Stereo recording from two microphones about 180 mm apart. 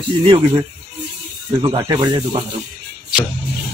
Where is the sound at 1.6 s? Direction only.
25° right (ahead or behind).